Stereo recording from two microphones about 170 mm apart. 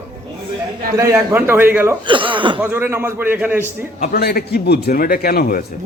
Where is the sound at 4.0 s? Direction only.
70° left (ahead or behind).